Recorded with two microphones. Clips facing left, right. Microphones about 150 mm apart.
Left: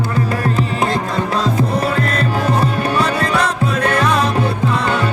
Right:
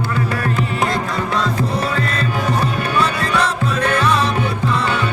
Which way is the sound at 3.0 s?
35° left (ahead or behind).